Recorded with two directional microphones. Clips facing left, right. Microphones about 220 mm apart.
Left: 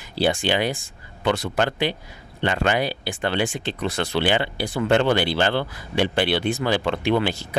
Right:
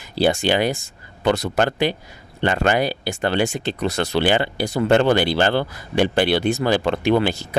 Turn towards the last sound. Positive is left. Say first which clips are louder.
# right 3 dB
turn(degrees=-45)  # may be behind; listen again after turning